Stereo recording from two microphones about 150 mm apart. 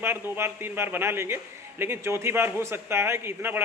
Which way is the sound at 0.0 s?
15° right (ahead or behind).